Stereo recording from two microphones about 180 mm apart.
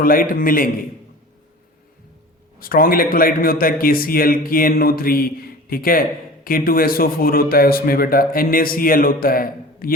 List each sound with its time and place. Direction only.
0.0 s a man's voice: 50° left (ahead or behind)
2.6 s a man's voice: 55° left (ahead or behind)